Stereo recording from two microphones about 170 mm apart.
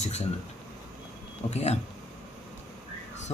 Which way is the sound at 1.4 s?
40° left (ahead or behind).